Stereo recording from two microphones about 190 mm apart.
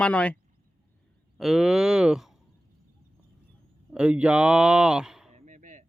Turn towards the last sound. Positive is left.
turn(degrees=-40)  # may be behind; listen again after turning